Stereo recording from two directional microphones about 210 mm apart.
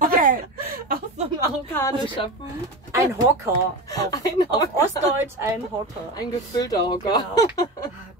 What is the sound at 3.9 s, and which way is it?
Speech, 15° left (ahead or behind).